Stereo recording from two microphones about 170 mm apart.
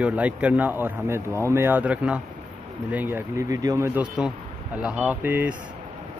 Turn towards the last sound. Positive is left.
turn(degrees=-10)  # may be behind; listen again after turning